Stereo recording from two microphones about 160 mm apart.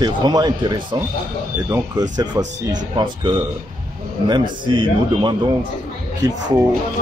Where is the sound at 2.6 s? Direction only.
30° right (ahead or behind).